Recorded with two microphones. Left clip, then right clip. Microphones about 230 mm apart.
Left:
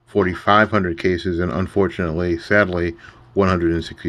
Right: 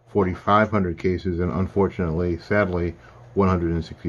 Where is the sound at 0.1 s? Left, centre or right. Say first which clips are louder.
Left 4 dB; centre.